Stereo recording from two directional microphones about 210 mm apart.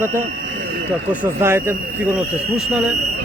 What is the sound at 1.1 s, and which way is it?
Speech, 10° right (ahead or behind).